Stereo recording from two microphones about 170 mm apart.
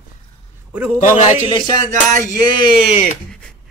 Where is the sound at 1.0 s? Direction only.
40° left (ahead or behind).